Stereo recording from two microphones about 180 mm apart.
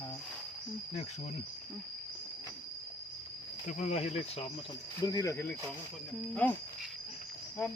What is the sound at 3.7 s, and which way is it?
Speech, 40° left (ahead or behind).